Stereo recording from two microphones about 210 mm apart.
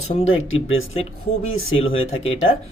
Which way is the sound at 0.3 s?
70° left (ahead or behind).